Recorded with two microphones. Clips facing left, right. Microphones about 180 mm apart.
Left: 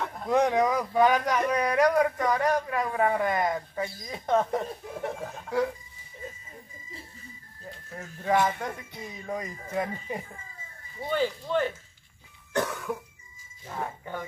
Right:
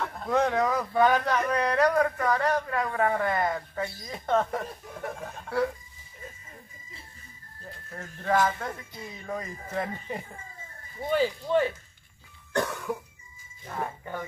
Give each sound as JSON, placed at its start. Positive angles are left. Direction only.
{"t": 0.0, "sound": "speech", "side_deg": 15}
{"t": 4.5, "sound": "speech", "side_deg": 25}
{"t": 5.3, "sound": "speech", "side_deg": 10}
{"t": 7.9, "sound": "speech", "side_deg": 10}
{"t": 11.0, "sound": "speech", "side_deg": 0}